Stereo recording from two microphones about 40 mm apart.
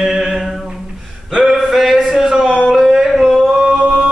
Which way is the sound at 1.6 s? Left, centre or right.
Centre.